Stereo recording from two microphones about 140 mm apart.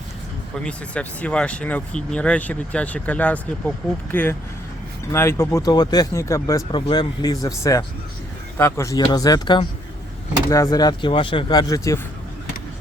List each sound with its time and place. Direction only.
0.6 s speech: 10° left (ahead or behind)
6.7 s speech: 35° left (ahead or behind)